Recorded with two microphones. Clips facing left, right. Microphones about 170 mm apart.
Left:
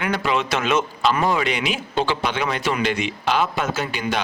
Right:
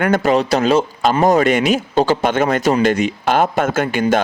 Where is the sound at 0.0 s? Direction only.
45° right (ahead or behind).